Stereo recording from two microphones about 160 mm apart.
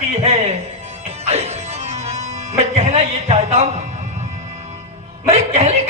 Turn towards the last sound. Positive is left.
turn(degrees=-40)  # may be behind; listen again after turning